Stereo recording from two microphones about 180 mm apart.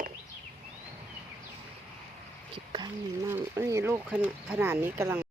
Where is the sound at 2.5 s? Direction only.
25° right (ahead or behind).